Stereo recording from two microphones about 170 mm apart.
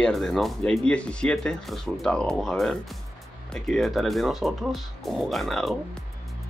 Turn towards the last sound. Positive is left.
turn(degrees=0)  # may be behind; listen again after turning